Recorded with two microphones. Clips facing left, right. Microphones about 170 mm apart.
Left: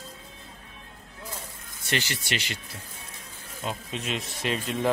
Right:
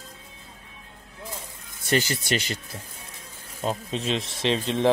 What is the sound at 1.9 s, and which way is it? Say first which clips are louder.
Speech: right 6 dB; 40° right (ahead or behind).